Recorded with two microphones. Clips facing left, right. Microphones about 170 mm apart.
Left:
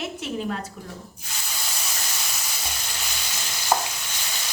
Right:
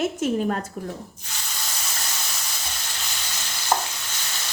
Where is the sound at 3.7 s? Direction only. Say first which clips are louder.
Even; 10° left (ahead or behind).